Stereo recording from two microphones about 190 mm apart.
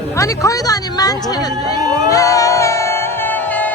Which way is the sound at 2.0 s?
15° left (ahead or behind).